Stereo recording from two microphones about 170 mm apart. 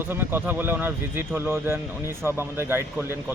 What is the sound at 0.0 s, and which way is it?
Speech, 15° right (ahead or behind).